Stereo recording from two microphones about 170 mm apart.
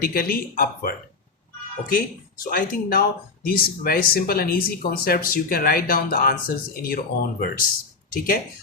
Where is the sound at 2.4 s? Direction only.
55° left (ahead or behind).